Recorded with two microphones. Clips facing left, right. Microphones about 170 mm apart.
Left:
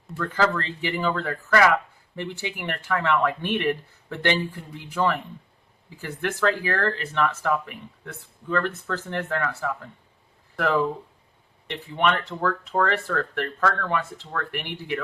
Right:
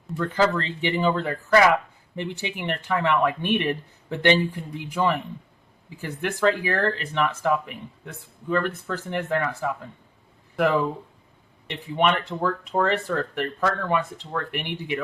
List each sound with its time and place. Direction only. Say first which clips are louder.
0.2 s speech: right 2 dB; 20° right (ahead or behind)
11.7 s speech: right 1 dB; 15° right (ahead or behind)